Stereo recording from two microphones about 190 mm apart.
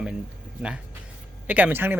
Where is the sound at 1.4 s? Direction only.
10° right (ahead or behind).